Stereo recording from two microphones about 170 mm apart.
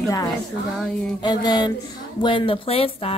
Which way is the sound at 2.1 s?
30° left (ahead or behind).